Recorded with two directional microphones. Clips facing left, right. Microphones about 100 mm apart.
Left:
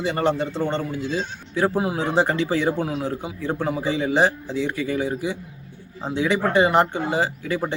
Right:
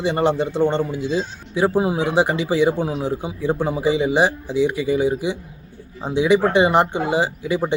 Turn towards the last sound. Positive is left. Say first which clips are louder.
# right 3 dB
turn(degrees=-15)  # may be behind; listen again after turning